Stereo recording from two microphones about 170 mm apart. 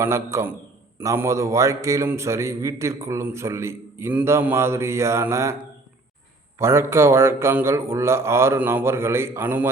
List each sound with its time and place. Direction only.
0.0 s a man's voice: 15° right (ahead or behind)
6.6 s a man's voice: 15° right (ahead or behind)